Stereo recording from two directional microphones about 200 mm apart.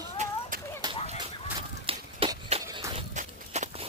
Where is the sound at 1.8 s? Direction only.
30° right (ahead or behind).